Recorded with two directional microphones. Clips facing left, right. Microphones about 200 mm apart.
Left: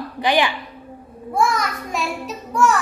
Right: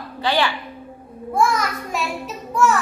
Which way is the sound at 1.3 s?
Centre (ahead or behind).